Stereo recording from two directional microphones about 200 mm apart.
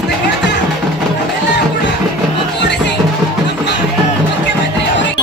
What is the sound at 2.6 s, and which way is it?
Music, 60° left (ahead or behind).